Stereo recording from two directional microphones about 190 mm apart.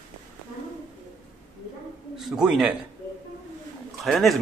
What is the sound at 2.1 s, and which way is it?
Speech, centre (ahead or behind).